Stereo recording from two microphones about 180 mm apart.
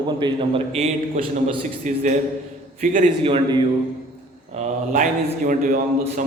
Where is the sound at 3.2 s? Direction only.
30° right (ahead or behind).